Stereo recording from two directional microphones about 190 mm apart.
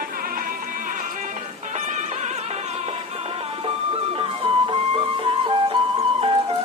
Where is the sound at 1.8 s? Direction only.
40° right (ahead or behind).